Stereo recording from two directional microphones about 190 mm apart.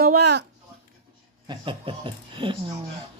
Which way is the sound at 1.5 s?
25° right (ahead or behind).